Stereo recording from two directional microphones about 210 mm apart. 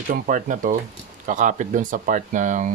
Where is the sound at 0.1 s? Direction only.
40° right (ahead or behind).